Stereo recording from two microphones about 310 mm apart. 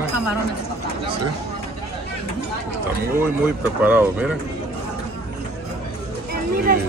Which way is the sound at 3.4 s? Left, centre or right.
Centre.